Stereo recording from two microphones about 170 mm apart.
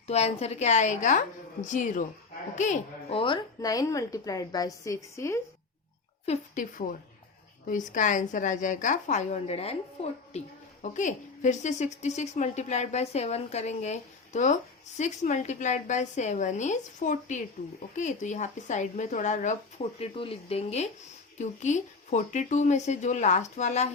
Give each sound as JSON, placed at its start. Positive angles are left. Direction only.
{"t": 0.1, "sound": "a woman's voice", "side_deg": 40}
{"t": 3.1, "sound": "a woman's voice", "side_deg": 30}
{"t": 6.2, "sound": "a woman's voice", "side_deg": 45}